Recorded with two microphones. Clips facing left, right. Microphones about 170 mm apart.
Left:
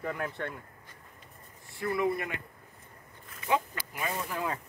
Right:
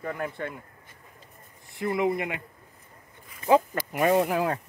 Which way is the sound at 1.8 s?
20° right (ahead or behind).